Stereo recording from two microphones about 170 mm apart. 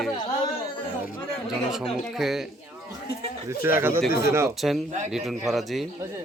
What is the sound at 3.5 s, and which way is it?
A man's voice, 15° right (ahead or behind).